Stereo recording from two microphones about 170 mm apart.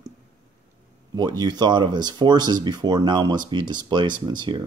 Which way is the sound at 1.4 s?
25° right (ahead or behind).